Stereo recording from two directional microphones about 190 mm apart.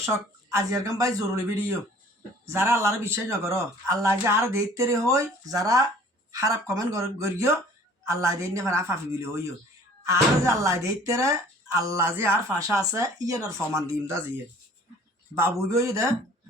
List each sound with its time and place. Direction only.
0.5 s speech: 15° right (ahead or behind)
15.4 s speech: 15° right (ahead or behind)